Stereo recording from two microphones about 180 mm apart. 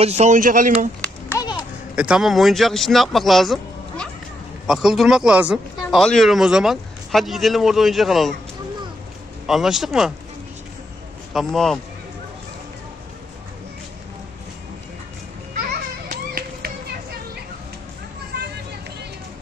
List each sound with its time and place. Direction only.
0.0 s speech: 40° right (ahead or behind)
1.4 s a sound: 25° left (ahead or behind)
2.0 s speech: 5° right (ahead or behind)
9.5 s speech: centre (ahead or behind)
11.3 s speech: centre (ahead or behind)
16.1 s a sound: 55° right (ahead or behind)